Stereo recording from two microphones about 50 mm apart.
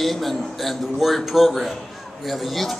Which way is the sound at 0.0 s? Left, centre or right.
Centre.